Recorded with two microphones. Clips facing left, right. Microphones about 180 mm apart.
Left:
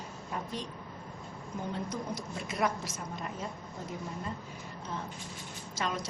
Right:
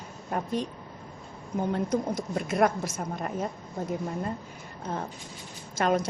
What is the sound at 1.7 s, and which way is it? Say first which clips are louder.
A woman's voice: right 9 dB; 55° right (ahead or behind).